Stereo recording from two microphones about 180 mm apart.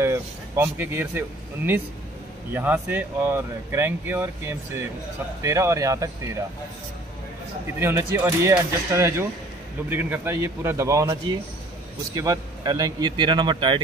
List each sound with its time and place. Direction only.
0.0 s speech: 15° right (ahead or behind)
2.5 s speech: 10° right (ahead or behind)
7.8 s speech: 15° right (ahead or behind)